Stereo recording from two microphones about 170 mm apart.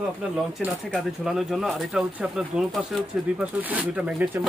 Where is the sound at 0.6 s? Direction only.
5° right (ahead or behind).